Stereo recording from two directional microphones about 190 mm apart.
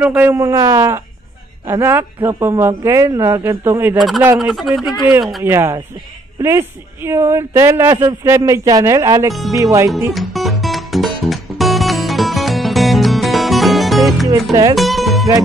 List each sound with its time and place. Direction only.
0.0 s speech: 10° right (ahead or behind)
4.0 s speech: centre (ahead or behind)
5.4 s speech: 15° right (ahead or behind)
7.1 s speech: 15° right (ahead or behind)
10.1 s music: centre (ahead or behind)
14.5 s speech: 20° right (ahead or behind)
14.8 s music: centre (ahead or behind)